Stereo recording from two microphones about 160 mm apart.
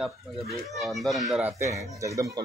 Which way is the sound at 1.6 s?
20° right (ahead or behind).